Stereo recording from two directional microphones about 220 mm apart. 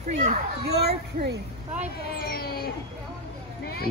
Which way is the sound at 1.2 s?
40° right (ahead or behind).